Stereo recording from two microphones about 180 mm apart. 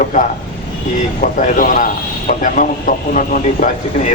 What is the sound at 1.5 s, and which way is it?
A man's voice, 45° left (ahead or behind).